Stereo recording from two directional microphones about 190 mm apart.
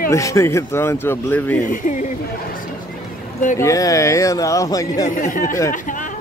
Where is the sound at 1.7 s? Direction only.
40° left (ahead or behind).